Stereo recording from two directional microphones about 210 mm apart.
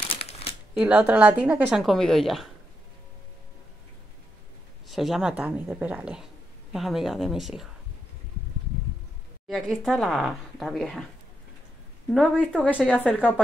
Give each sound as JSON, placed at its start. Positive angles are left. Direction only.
{"t": 0.0, "sound": "shuffling cards", "side_deg": 30}
{"t": 0.7, "sound": "a woman's voice", "side_deg": -5}
{"t": 4.8, "sound": "a woman's voice", "side_deg": 0}
{"t": 9.5, "sound": "a woman's voice", "side_deg": 0}
{"t": 12.1, "sound": "a woman's voice", "side_deg": 5}